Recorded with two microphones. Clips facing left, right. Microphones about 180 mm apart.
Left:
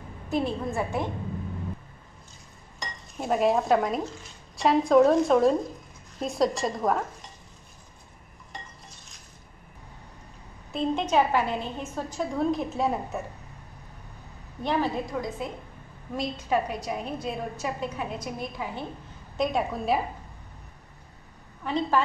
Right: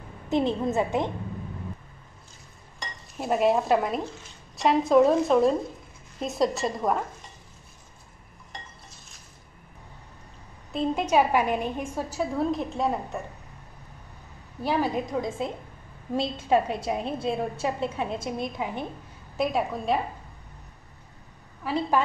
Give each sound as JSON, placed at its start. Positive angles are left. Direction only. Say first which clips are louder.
{"t": 0.3, "sound": "a woman's voice", "louder": "right 3 dB", "side_deg": -20}
{"t": 3.2, "sound": "a woman's voice", "louder": "right 1 dB", "side_deg": 0}
{"t": 10.7, "sound": "a woman's voice", "louder": "right 1 dB", "side_deg": -5}
{"t": 14.6, "sound": "a woman's voice", "louder": "right 1 dB", "side_deg": -5}
{"t": 15.1, "sound": "a woman's voice", "louder": "right 3 dB", "side_deg": -25}
{"t": 19.3, "sound": "a woman's voice", "louder": "even", "side_deg": -5}
{"t": 21.6, "sound": "a woman's voice", "louder": "even", "side_deg": -5}